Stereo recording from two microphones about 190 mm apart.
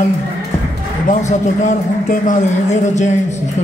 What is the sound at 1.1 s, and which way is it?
A man's voice, 40° left (ahead or behind).